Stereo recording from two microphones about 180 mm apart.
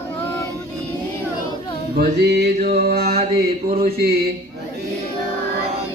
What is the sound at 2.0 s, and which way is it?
Music, 65° right (ahead or behind).